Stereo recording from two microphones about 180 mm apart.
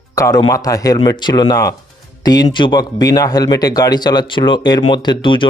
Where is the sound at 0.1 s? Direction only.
20° left (ahead or behind).